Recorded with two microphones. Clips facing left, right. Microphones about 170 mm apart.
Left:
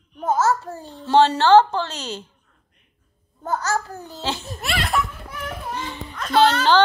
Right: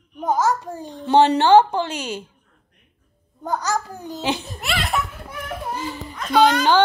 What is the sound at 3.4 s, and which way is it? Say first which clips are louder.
A child's voice: even; 15° right (ahead or behind).